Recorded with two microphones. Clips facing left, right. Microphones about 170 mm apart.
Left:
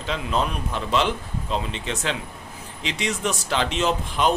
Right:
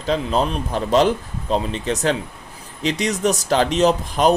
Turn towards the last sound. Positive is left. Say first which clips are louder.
# right 6 dB
turn(degrees=-40)  # may be behind; listen again after turning